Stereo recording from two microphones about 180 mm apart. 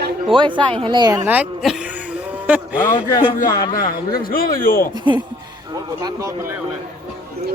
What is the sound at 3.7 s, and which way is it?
A man's voice, 55° left (ahead or behind).